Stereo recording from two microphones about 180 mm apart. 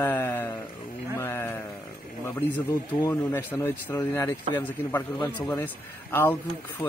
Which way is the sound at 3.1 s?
10° left (ahead or behind).